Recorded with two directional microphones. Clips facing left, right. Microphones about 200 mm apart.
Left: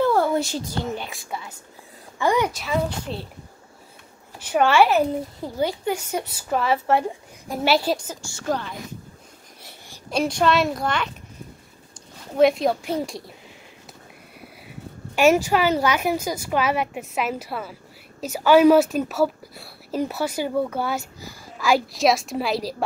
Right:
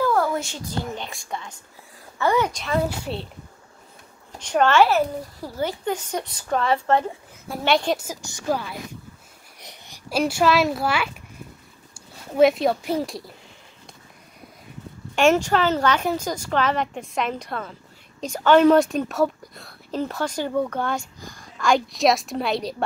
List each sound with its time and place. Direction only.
0.0 s a sound: 30° left (ahead or behind)
0.9 s a woman's voice: 5° left (ahead or behind)
4.4 s a woman's voice: 10° left (ahead or behind)
8.0 s a child's voice: 15° right (ahead or behind)
9.6 s babbling: 20° right (ahead or behind)
10.0 s a child's voice: 5° right (ahead or behind)
12.4 s a woman's voice: centre (ahead or behind)
15.1 s a woman's voice: 5° left (ahead or behind)